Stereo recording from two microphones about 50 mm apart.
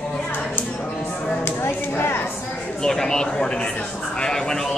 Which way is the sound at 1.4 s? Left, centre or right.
Left.